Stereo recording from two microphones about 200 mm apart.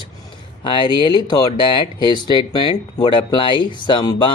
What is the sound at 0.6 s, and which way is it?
Speech, 25° left (ahead or behind).